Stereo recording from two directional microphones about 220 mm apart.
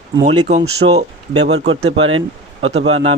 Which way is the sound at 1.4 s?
55° right (ahead or behind).